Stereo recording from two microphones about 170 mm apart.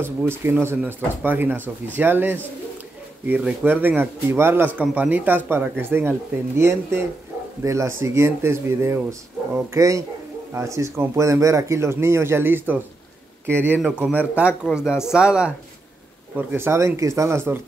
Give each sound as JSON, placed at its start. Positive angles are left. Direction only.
{"t": 0.0, "sound": "a man's voice", "side_deg": -15}